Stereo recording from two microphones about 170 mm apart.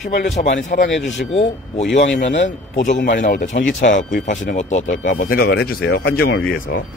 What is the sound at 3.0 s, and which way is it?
Speech, 65° left (ahead or behind).